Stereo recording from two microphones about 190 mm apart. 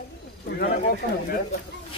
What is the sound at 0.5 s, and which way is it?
Speech, 50° left (ahead or behind).